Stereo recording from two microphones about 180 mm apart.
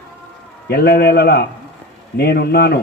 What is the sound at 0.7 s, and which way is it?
A man's voice, 65° left (ahead or behind).